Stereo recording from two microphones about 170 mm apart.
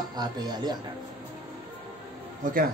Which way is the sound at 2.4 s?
50° right (ahead or behind).